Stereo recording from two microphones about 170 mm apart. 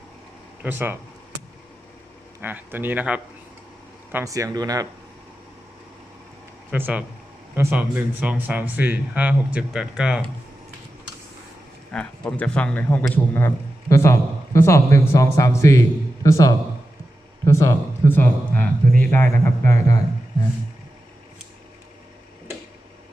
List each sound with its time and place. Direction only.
0.6 s speech: 10° right (ahead or behind)
2.4 s speech: 10° right (ahead or behind)
6.7 s speech: 10° right (ahead or behind)
11.9 s speech: 5° left (ahead or behind)